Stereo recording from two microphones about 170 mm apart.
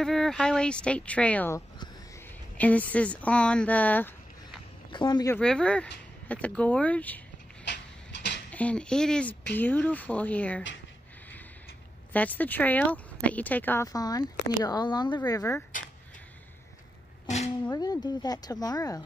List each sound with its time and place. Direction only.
0.0 s speech: 5° left (ahead or behind)
4.9 s speech: 25° left (ahead or behind)
5.3 s speech: 5° left (ahead or behind)
7.6 s a sound: 90° left
8.5 s speech: 10° left (ahead or behind)
12.1 s speech: 10° left (ahead or behind)
17.6 s speech: 25° left (ahead or behind)